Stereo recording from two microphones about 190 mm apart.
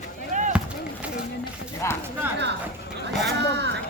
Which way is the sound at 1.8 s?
15° left (ahead or behind).